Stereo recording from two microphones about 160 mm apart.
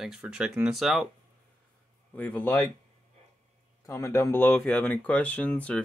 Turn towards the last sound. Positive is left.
turn(degrees=10)  # may be behind; listen again after turning